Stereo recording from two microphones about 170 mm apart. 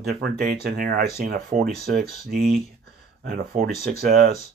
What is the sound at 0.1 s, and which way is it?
Speech, 60° right (ahead or behind).